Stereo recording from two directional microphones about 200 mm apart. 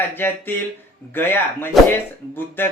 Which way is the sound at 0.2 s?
10° left (ahead or behind).